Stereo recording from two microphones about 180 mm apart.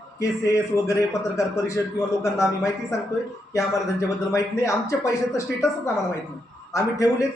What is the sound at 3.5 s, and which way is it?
Speech, 15° left (ahead or behind).